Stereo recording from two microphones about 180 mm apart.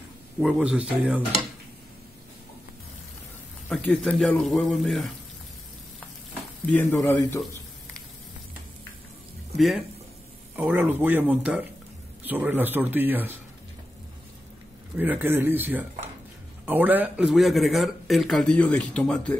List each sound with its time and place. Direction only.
0.4 s speech: 5° right (ahead or behind)
3.6 s speech: 5° left (ahead or behind)
6.6 s a man's voice: 10° left (ahead or behind)
10.5 s speech: 10° right (ahead or behind)
15.0 s speech: 10° right (ahead or behind); by 19.3 s 5° left (ahead or behind)